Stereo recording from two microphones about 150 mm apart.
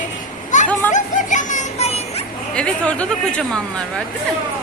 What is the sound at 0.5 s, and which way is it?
Children playing, 55° left (ahead or behind).